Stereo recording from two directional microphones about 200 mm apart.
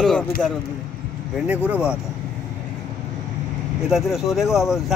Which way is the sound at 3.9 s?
Centre (ahead or behind).